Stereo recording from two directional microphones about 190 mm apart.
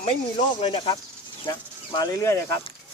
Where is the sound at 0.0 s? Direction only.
30° left (ahead or behind).